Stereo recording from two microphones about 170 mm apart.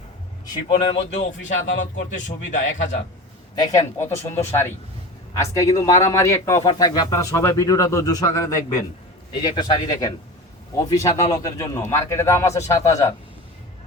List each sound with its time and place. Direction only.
0.7 s speech: 30° left (ahead or behind)
1.5 s speech: 45° left (ahead or behind)
3.6 s a man's voice: 20° left (ahead or behind)
11.0 s speech: 40° left (ahead or behind)
11.4 s a man's voice: 20° left (ahead or behind)